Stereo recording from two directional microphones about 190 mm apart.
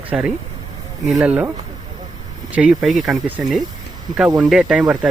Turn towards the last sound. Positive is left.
turn(degrees=-5)  # may be behind; listen again after turning